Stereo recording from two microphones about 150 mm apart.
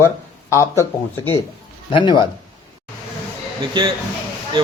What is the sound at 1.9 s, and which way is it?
Speech, 35° left (ahead or behind).